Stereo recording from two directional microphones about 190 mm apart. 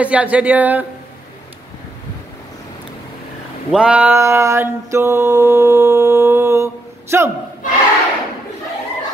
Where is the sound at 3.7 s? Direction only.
5° right (ahead or behind).